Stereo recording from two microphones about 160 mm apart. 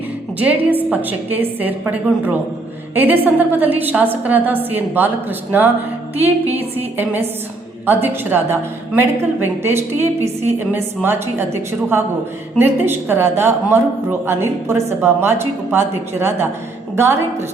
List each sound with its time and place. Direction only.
0.3 s speech: 10° right (ahead or behind)